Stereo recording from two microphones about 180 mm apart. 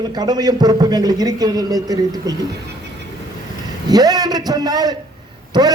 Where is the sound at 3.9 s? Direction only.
20° right (ahead or behind).